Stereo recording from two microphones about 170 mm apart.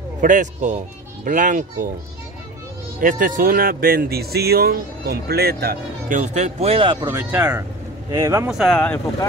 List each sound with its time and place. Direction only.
0.2 s speech: 50° right (ahead or behind)
3.0 s speech: 50° right (ahead or behind); by 8.5 s 20° right (ahead or behind)
8.5 s speech: centre (ahead or behind)